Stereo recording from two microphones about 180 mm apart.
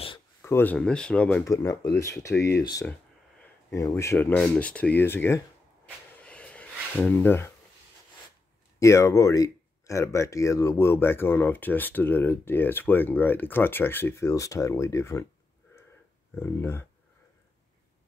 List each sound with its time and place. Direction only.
0.4 s speech: 10° left (ahead or behind)
1.4 s speech: 15° left (ahead or behind)
6.2 s a sound: 5° left (ahead or behind)
8.7 s speech: 15° left (ahead or behind)
16.3 s speech: 15° left (ahead or behind)